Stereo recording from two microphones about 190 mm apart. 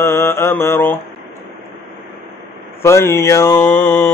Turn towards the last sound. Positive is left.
turn(degrees=10)  # may be behind; listen again after turning